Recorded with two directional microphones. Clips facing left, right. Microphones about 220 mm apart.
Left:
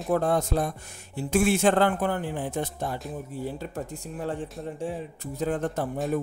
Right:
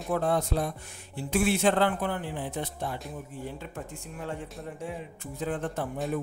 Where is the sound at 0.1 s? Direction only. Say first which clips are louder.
Left 3 dB; 45° left (ahead or behind).